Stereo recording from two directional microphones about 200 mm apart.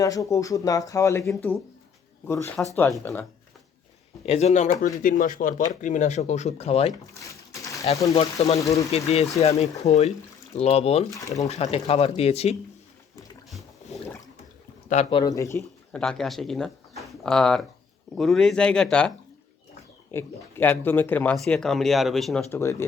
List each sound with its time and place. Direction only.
0.0 s speech: 15° left (ahead or behind)
1.2 s speech: 5° left (ahead or behind)
2.6 s speech: 5° left (ahead or behind)
4.3 s speech: 35° left (ahead or behind)
7.3 s a sound: 15° left (ahead or behind)
8.0 s speech: 25° left (ahead or behind)
8.5 s speech: 15° left (ahead or behind)
8.9 s speech: 35° left (ahead or behind)
11.1 s speech: 15° left (ahead or behind)
11.4 s speech: 35° left (ahead or behind)
13.5 s boat: centre (ahead or behind)
15.1 s speech: 20° left (ahead or behind)
20.1 s speech: 10° left (ahead or behind)
22.5 s speech: 10° left (ahead or behind)